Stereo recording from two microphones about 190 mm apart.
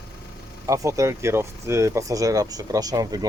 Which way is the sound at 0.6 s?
15° right (ahead or behind).